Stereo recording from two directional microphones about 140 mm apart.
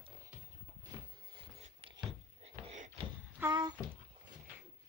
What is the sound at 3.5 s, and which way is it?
Speech, 30° right (ahead or behind).